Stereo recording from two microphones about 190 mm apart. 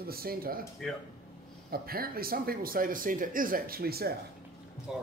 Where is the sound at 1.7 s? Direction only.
50° right (ahead or behind).